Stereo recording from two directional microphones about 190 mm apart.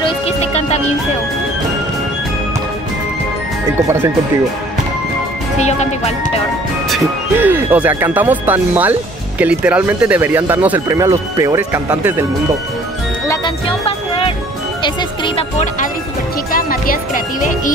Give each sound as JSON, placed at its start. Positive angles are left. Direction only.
{"t": 0.0, "sound": "music", "side_deg": 30}
{"t": 5.6, "sound": "speech", "side_deg": 35}
{"t": 7.3, "sound": "speech", "side_deg": -10}
{"t": 13.3, "sound": "music", "side_deg": 25}
{"t": 14.8, "sound": "speech", "side_deg": 25}
{"t": 16.5, "sound": "speech", "side_deg": 50}